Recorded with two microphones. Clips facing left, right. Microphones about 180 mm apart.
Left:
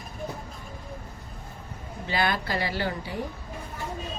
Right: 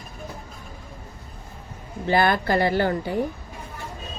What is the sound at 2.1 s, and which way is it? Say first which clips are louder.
Speech: right 7 dB; 50° right (ahead or behind).